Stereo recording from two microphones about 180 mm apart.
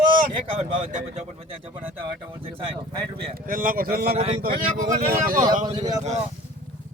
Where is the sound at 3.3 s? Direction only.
50° right (ahead or behind).